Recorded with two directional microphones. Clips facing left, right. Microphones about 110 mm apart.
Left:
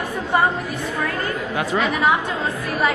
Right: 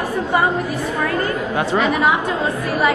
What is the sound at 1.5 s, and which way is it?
Speech, 30° right (ahead or behind).